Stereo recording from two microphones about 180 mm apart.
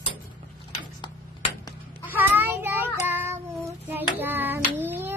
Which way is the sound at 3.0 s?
10° right (ahead or behind).